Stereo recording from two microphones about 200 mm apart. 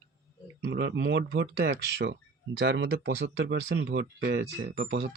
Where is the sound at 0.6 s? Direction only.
60° right (ahead or behind).